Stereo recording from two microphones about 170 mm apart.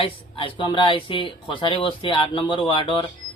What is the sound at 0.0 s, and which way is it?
Speech, 30° left (ahead or behind).